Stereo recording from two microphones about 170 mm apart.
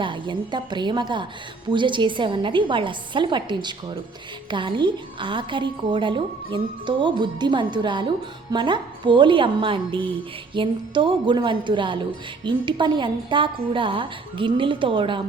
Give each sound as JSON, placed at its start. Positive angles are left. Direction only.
{"t": 0.0, "sound": "a woman's voice", "side_deg": -30}